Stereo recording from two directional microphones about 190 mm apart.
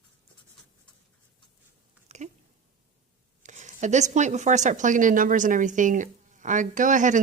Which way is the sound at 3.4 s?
40° right (ahead or behind).